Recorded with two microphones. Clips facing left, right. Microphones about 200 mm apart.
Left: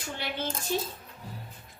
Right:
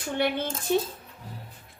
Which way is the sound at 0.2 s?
55° right (ahead or behind).